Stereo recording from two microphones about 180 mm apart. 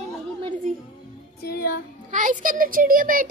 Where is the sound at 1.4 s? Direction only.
60° left (ahead or behind).